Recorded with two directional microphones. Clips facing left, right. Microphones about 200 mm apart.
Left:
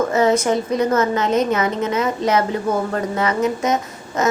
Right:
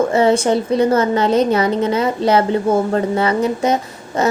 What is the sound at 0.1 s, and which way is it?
A woman's voice, 30° right (ahead or behind).